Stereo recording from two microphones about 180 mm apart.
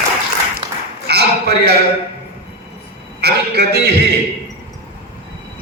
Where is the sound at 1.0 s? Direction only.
65° right (ahead or behind).